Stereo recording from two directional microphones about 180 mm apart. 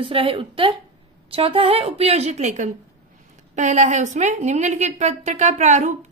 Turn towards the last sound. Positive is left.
turn(degrees=-45)  # may be behind; listen again after turning